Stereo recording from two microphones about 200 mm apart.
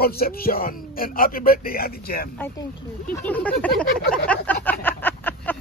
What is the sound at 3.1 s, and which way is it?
Speech, 10° left (ahead or behind).